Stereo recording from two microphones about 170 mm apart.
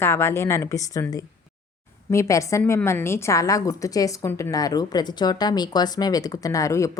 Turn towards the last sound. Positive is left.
turn(degrees=20)  # may be behind; listen again after turning